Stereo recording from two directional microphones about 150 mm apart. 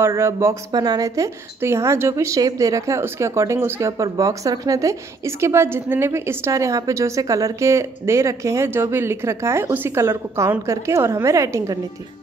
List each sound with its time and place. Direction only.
0.0 s speech: 15° right (ahead or behind)